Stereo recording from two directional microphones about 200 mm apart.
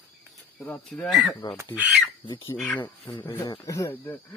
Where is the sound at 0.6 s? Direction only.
5° left (ahead or behind).